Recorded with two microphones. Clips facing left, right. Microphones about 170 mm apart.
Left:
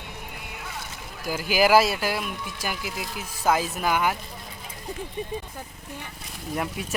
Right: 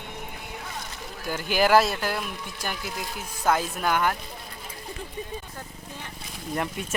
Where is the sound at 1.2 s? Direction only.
5° left (ahead or behind).